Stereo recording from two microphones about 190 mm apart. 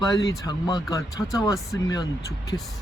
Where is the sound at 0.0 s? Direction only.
20° left (ahead or behind).